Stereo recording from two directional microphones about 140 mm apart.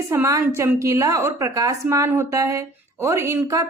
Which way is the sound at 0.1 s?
20° right (ahead or behind).